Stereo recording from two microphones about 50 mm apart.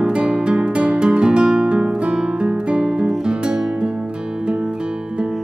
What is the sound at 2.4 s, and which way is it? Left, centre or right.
Guitar, centre.